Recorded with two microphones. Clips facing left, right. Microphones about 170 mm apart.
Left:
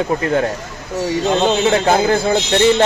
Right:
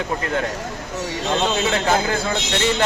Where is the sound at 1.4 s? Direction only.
35° left (ahead or behind).